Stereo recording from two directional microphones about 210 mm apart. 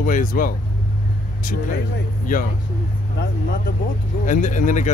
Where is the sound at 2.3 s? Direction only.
40° left (ahead or behind).